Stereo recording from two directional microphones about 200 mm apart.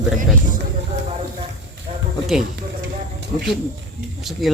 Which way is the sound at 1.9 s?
35° right (ahead or behind).